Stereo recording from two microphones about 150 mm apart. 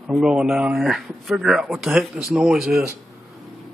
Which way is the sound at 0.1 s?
5° right (ahead or behind).